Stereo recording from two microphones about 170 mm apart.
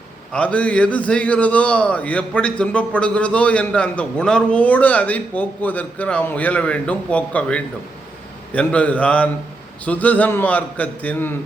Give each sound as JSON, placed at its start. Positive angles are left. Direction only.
{"t": 0.3, "sound": "a man's voice", "side_deg": 5}